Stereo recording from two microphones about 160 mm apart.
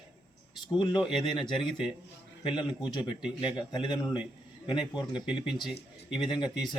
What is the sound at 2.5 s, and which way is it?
Speech, 30° left (ahead or behind).